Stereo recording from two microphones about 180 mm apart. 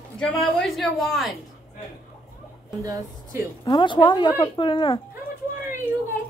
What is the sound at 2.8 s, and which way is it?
Speech, 20° right (ahead or behind).